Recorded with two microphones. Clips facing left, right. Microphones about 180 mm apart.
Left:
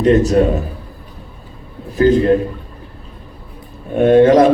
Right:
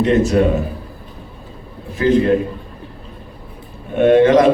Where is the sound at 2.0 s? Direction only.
35° left (ahead or behind).